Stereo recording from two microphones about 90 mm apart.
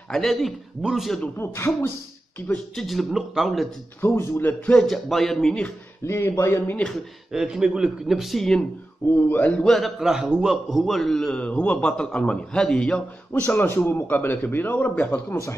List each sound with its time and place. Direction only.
0.1 s a man's voice: 5° left (ahead or behind)
1.4 s a man's voice: 30° left (ahead or behind)
2.7 s a man's voice: centre (ahead or behind)
4.0 s a man's voice: 30° left (ahead or behind)
4.7 s a man's voice: centre (ahead or behind)
6.0 s speech: 30° left (ahead or behind)
7.3 s a man's voice: 5° right (ahead or behind)
9.3 s a man's voice: 15° left (ahead or behind)
9.7 s a man's voice: centre (ahead or behind)
13.5 s a man's voice: 25° left (ahead or behind)